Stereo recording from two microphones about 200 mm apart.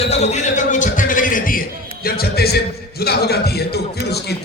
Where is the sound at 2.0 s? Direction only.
50° left (ahead or behind).